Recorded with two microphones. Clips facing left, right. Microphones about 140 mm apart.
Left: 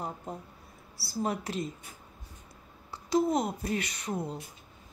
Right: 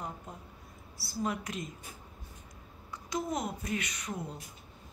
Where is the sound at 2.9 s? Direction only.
30° left (ahead or behind).